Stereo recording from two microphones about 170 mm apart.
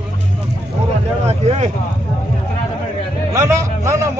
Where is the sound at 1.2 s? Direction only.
40° right (ahead or behind).